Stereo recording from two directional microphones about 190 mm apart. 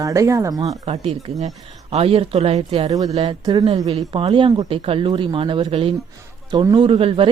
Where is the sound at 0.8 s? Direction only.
35° right (ahead or behind).